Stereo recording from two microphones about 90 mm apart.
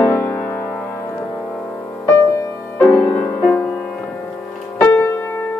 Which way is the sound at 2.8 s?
30° left (ahead or behind).